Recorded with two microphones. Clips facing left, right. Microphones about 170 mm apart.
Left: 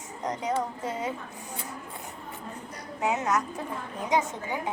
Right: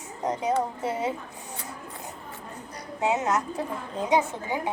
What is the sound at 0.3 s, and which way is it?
Speech, 25° right (ahead or behind).